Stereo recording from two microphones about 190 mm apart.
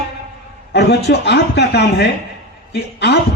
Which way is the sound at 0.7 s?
60° left (ahead or behind).